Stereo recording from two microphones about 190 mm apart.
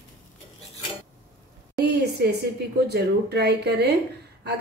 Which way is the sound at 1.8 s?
60° right (ahead or behind).